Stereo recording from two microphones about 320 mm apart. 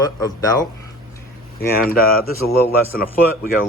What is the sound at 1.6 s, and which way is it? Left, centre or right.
Speech, left.